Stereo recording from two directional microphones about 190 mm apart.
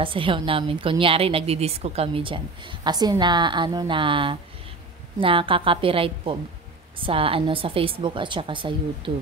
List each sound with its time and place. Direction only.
0.0 s a woman's voice: 30° right (ahead or behind)